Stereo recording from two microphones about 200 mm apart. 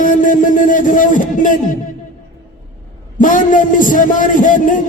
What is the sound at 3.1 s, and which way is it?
A man's voice, 40° left (ahead or behind).